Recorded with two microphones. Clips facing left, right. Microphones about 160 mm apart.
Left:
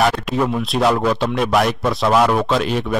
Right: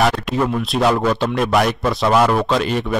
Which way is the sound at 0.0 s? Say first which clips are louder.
Even; centre (ahead or behind).